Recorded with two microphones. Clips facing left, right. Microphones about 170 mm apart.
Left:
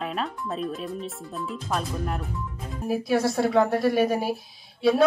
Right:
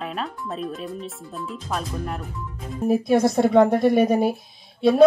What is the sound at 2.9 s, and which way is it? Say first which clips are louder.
Speech: right 5 dB; 20° right (ahead or behind).